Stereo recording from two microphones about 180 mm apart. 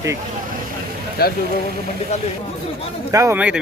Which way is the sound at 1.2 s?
60° left (ahead or behind).